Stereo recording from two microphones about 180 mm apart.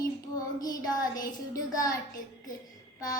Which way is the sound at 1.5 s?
20° left (ahead or behind).